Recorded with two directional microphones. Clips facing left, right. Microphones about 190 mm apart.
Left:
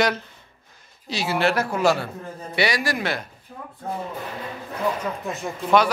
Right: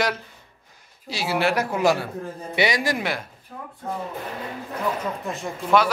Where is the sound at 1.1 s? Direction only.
10° right (ahead or behind).